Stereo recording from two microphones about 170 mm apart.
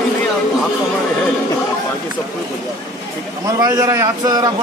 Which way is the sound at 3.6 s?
20° right (ahead or behind).